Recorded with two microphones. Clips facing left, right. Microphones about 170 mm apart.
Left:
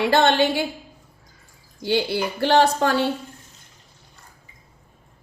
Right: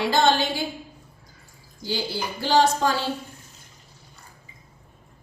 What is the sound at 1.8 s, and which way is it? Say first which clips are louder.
A woman's voice: left 7 dB; 65° left (ahead or behind).